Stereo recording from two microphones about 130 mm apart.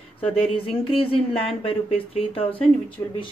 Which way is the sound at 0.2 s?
45° left (ahead or behind).